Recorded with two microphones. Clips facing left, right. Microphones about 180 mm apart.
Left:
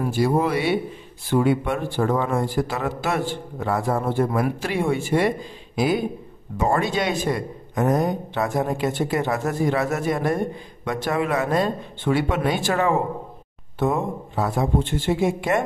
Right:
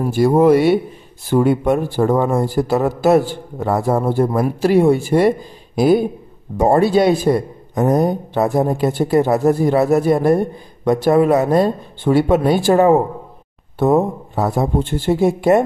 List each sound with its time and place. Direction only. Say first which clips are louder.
0.0 s a man's voice: right 8 dB; 50° right (ahead or behind)